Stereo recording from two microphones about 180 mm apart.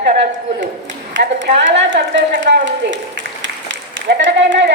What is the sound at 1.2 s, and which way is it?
A woman's voice, 80° right.